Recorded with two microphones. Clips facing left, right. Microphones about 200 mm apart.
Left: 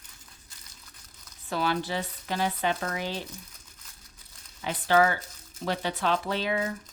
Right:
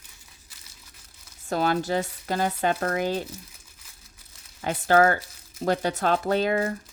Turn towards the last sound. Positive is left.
turn(degrees=-50)  # may be behind; listen again after turning